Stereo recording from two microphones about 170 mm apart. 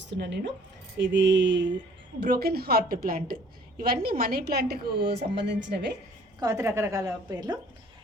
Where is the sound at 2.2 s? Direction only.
65° right (ahead or behind); by 6.0 s 85° right.